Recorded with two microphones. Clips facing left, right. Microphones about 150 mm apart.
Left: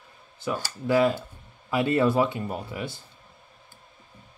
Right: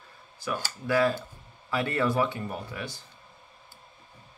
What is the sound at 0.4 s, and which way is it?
Speech, 20° left (ahead or behind).